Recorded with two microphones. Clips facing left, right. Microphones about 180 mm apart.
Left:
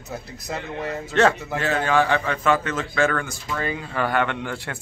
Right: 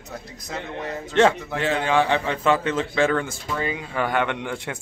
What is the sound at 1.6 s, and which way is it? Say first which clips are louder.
A man's voice: even; 25° right (ahead or behind).